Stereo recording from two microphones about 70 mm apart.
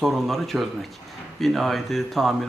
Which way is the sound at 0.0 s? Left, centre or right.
Centre.